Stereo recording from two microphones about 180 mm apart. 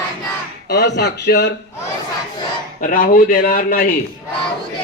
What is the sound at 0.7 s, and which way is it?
Speech, 70° left (ahead or behind).